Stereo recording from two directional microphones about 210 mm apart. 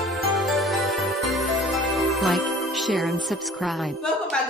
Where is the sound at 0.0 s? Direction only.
Centre (ahead or behind).